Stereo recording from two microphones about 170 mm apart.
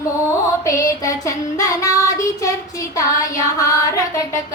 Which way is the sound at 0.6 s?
20° left (ahead or behind).